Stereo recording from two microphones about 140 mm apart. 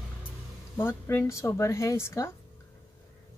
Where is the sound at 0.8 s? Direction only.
15° left (ahead or behind).